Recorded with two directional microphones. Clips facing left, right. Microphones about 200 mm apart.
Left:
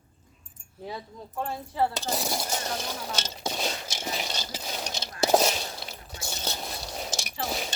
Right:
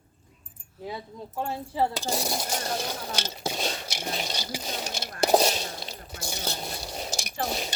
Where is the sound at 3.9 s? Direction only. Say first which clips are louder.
Right 1 dB; 15° right (ahead or behind).